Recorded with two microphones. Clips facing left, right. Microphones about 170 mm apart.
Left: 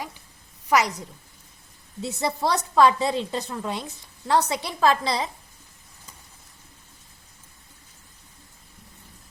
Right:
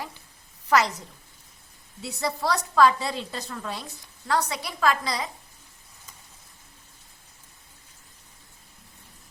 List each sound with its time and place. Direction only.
0.7 s a woman's voice: 15° left (ahead or behind)
2.0 s a woman's voice: 25° left (ahead or behind)